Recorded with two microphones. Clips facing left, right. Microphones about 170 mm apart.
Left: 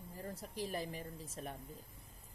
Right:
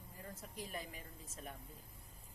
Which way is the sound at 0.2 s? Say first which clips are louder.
Left 6 dB; 35° left (ahead or behind).